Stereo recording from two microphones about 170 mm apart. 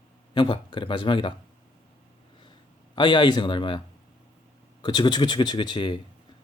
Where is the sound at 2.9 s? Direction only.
25° left (ahead or behind).